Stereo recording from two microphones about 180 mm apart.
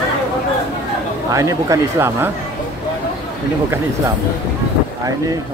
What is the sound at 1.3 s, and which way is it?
Speech, 20° right (ahead or behind).